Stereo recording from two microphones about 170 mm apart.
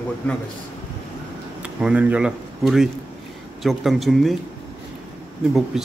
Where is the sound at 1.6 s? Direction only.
5° right (ahead or behind).